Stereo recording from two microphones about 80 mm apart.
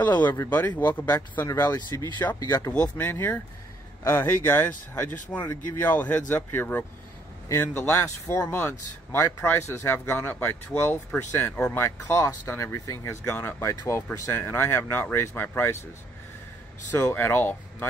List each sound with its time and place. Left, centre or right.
0.0 s speech: left
1.5 s speech: left
2.7 s speech: centre
16.9 s speech: left